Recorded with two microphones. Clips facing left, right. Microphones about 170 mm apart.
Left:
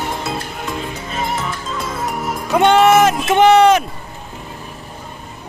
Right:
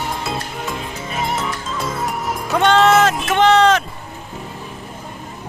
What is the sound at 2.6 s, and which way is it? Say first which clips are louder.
Speech: left 2 dB; 15° left (ahead or behind).